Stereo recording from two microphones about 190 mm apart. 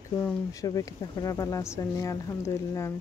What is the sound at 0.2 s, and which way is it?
Speech, 15° left (ahead or behind).